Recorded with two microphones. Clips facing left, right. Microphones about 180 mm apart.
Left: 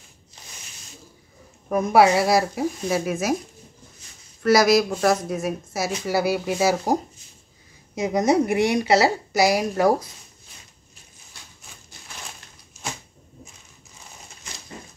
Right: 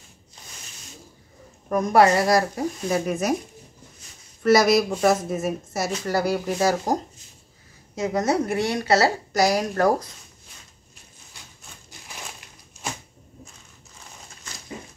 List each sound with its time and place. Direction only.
1.7 s speech: 5° left (ahead or behind)
4.4 s speech: centre (ahead or behind)